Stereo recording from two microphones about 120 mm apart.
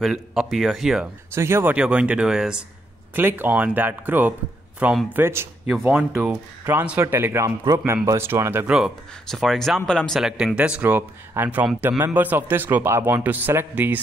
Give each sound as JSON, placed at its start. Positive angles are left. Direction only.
{"t": 0.0, "sound": "speech", "side_deg": -5}
{"t": 1.3, "sound": "speech", "side_deg": -20}
{"t": 3.2, "sound": "speech", "side_deg": -15}
{"t": 8.6, "sound": "speech", "side_deg": -5}